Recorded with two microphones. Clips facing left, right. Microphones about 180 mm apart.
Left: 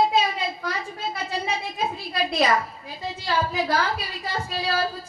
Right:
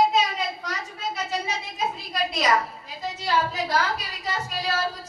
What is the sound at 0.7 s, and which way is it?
Speech, 60° left (ahead or behind).